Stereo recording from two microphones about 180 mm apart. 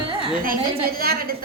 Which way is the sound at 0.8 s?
55° right (ahead or behind).